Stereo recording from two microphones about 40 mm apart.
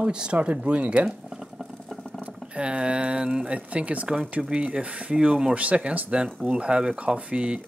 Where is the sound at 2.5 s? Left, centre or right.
Right.